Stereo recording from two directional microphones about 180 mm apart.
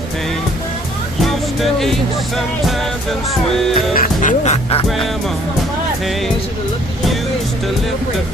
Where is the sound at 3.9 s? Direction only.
45° left (ahead or behind).